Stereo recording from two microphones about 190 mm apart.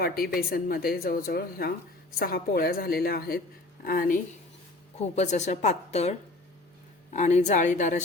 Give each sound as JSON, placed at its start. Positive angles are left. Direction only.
{"t": 0.0, "sound": "speech", "side_deg": 50}
{"t": 4.9, "sound": "a woman's voice", "side_deg": 35}